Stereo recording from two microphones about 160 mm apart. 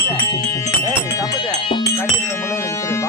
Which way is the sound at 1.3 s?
25° left (ahead or behind).